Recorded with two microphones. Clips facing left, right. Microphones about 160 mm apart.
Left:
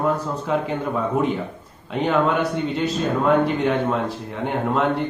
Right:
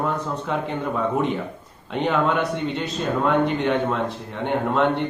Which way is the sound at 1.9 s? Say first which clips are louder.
Left 2 dB; centre (ahead or behind).